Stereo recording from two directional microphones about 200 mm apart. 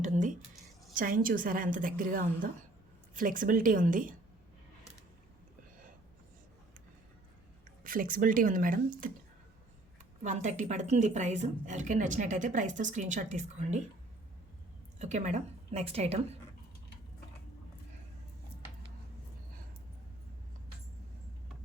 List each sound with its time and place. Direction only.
0.0 s a sound: 40° right (ahead or behind)
0.9 s a woman's voice: 45° right (ahead or behind)
7.9 s a woman's voice: 45° right (ahead or behind)
10.2 s speech: 35° right (ahead or behind)
14.9 s speech: 35° right (ahead or behind)